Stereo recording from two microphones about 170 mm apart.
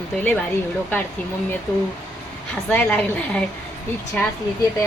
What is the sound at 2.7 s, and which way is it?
Speech, 10° left (ahead or behind).